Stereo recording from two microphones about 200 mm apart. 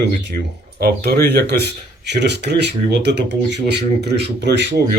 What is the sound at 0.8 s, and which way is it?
Speech, 50° right (ahead or behind).